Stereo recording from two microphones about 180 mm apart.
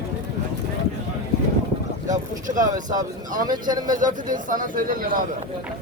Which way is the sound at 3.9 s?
45° right (ahead or behind).